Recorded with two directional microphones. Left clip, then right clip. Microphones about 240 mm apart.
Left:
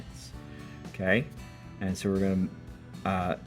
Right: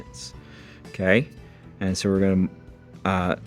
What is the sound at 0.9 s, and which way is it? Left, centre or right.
Speech, right.